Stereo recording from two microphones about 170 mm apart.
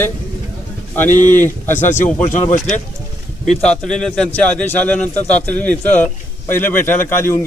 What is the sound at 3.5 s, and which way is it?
A man's voice, 5° left (ahead or behind).